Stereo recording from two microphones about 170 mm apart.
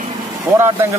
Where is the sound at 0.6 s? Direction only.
15° right (ahead or behind).